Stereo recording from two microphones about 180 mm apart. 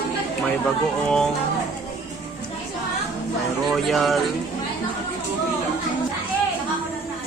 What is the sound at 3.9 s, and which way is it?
Speech, centre (ahead or behind).